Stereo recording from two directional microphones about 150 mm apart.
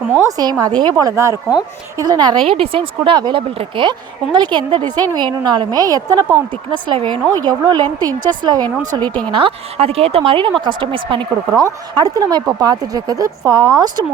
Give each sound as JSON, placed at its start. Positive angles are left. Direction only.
{"t": 0.1, "sound": "a woman's voice", "side_deg": -25}